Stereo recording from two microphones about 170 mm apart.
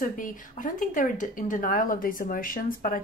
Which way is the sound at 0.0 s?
50° left (ahead or behind).